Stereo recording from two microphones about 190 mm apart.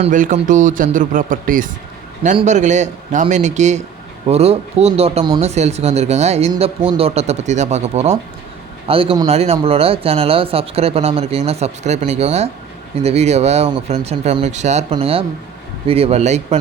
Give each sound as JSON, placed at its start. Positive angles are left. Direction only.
{"t": 0.0, "sound": "speech", "side_deg": -40}